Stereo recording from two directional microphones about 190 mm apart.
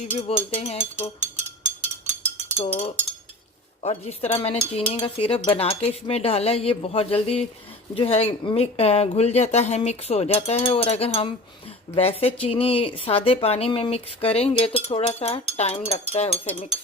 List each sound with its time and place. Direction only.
0.3 s speech: 30° left (ahead or behind)
2.6 s speech: 30° left (ahead or behind)